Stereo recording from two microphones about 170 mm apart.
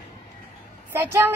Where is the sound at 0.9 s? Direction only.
15° right (ahead or behind).